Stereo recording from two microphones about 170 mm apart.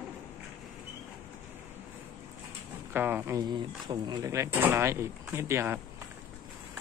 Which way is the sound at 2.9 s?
10° right (ahead or behind).